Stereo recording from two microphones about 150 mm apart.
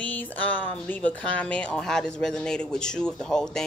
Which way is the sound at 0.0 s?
10° left (ahead or behind).